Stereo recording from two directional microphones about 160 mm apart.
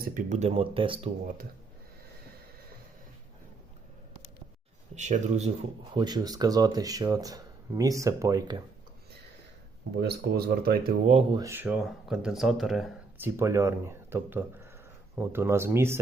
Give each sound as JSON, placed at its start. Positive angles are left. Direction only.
{"t": 0.1, "sound": "speech", "side_deg": -50}
{"t": 4.9, "sound": "speech", "side_deg": -50}
{"t": 5.9, "sound": "speech", "side_deg": -25}
{"t": 9.9, "sound": "speech", "side_deg": -85}
{"t": 11.0, "sound": "speech", "side_deg": -45}
{"t": 11.3, "sound": "speech", "side_deg": -25}
{"t": 11.5, "sound": "speech", "side_deg": -10}
{"t": 13.1, "sound": "speech", "side_deg": -15}